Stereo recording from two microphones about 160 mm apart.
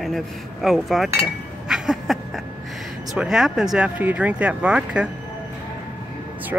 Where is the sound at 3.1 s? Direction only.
5° right (ahead or behind).